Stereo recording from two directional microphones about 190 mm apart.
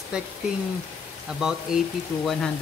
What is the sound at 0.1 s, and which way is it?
Speech, 5° right (ahead or behind).